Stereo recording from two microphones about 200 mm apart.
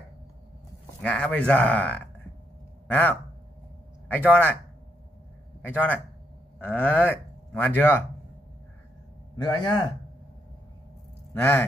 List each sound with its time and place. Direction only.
1.0 s speech: 5° left (ahead or behind)
5.6 s speech: 10° left (ahead or behind)
9.4 s a man's voice: 20° left (ahead or behind)
11.3 s speech: 10° left (ahead or behind)